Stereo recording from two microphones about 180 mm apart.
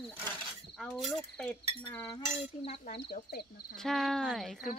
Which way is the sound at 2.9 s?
60° left (ahead or behind).